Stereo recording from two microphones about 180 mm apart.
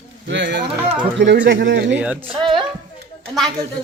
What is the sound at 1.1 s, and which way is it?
Speech, 75° right (ahead or behind).